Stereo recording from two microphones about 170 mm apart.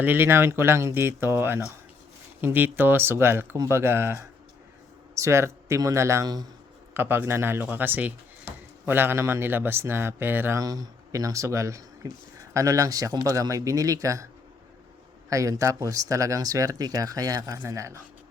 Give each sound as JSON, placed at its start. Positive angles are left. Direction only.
{"t": 0.0, "sound": "speech", "side_deg": -10}
{"t": 15.3, "sound": "speech", "side_deg": -20}